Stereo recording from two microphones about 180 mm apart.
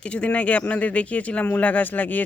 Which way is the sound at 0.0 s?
5° left (ahead or behind).